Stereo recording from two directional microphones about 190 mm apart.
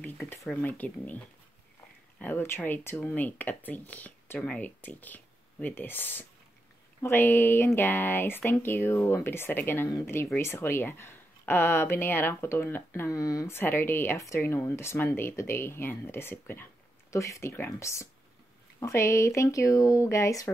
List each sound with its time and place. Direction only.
0.0 s speech: 10° left (ahead or behind)